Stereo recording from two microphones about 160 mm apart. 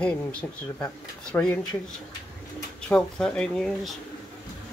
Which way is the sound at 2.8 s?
5° left (ahead or behind).